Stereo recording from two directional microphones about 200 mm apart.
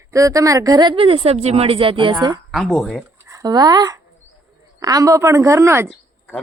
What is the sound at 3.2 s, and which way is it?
Speech, 15° right (ahead or behind).